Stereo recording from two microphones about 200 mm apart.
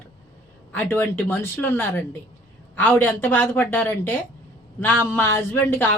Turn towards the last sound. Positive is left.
turn(degrees=10)  # may be behind; listen again after turning